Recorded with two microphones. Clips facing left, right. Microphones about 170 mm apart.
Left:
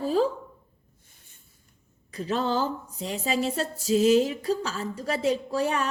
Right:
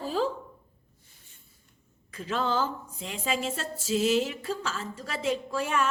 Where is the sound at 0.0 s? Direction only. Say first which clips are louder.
Left 5 dB; 40° left (ahead or behind).